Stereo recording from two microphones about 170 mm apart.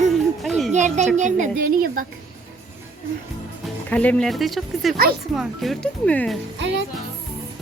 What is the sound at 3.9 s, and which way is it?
Speech, 10° left (ahead or behind).